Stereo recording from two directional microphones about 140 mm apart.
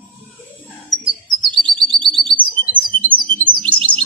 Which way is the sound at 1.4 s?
35° right (ahead or behind).